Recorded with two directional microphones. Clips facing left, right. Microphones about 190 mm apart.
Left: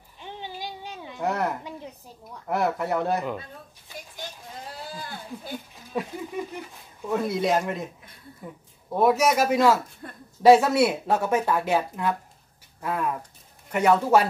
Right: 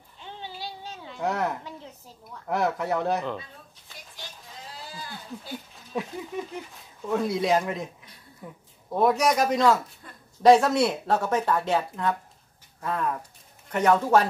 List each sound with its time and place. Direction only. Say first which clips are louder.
0.2 s a sound: left 2 dB; 15° left (ahead or behind)
1.2 s speech: left 1 dB; centre (ahead or behind)
1.6 s a sound: left 3 dB; 15° left (ahead or behind)
2.4 s speech: left 1 dB; centre (ahead or behind)
5.9 s speech: left 1 dB; centre (ahead or behind)
10.0 s a woman's voice: left 7 dB; 55° left (ahead or behind)
10.4 s speech: left 1 dB; 5° left (ahead or behind)